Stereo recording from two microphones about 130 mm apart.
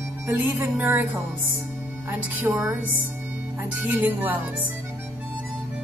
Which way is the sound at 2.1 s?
15° right (ahead or behind).